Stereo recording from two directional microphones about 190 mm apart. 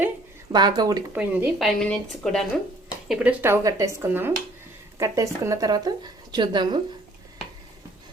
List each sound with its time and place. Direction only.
0.5 s speech: 20° right (ahead or behind)
1.1 s speech: 10° right (ahead or behind)
3.1 s a woman's voice: 10° right (ahead or behind)